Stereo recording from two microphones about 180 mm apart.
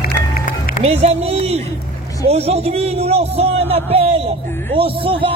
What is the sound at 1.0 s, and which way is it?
Speech, 35° right (ahead or behind).